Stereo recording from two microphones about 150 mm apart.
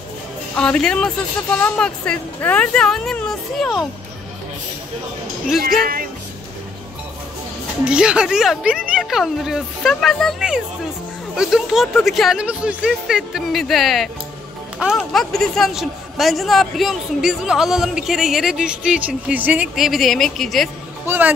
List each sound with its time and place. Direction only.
0.6 s a man's voice: 5° left (ahead or behind)
5.6 s speech: 75° right (ahead or behind)
7.8 s a man's voice: 5° right (ahead or behind)